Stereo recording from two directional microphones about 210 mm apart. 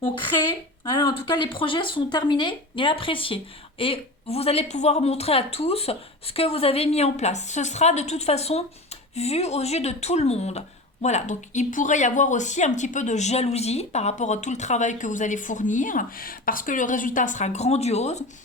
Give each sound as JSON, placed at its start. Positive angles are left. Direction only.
{"t": 0.9, "sound": "speech", "side_deg": 20}